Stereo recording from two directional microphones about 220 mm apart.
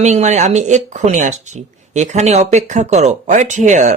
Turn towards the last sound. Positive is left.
turn(degrees=-35)  # may be behind; listen again after turning